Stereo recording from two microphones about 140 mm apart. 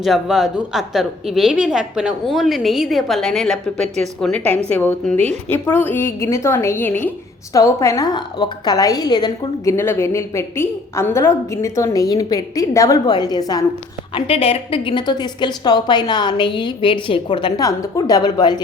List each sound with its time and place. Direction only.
0.0 s a woman's voice: centre (ahead or behind); by 9.7 s 30° left (ahead or behind)
9.7 s a woman's voice: 20° left (ahead or behind)
14.1 s a woman's voice: 40° left (ahead or behind)